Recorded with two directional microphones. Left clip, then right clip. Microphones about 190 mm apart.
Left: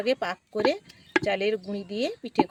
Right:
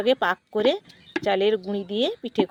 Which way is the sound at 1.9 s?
80° right.